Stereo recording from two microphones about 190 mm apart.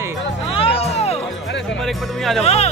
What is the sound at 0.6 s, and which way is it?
Music, 30° left (ahead or behind).